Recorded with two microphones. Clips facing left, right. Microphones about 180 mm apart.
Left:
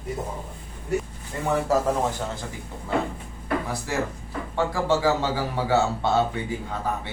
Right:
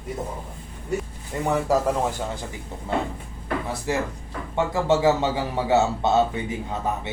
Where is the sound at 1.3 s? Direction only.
20° right (ahead or behind).